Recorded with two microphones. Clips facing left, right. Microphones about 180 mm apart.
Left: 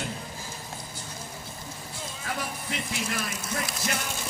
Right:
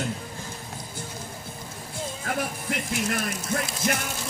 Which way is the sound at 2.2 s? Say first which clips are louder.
Right 4 dB; 50° right (ahead or behind).